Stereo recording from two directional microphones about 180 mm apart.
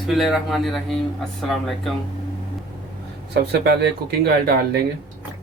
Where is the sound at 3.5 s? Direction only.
65° right (ahead or behind).